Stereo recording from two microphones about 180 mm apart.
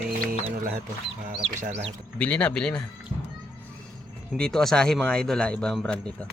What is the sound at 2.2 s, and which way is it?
Speech, 5° left (ahead or behind).